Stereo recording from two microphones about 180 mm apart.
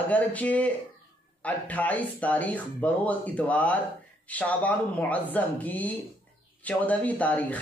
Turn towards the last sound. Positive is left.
turn(degrees=10)  # may be behind; listen again after turning